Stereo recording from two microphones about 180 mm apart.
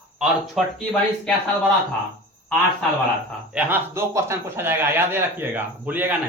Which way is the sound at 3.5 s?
10° right (ahead or behind).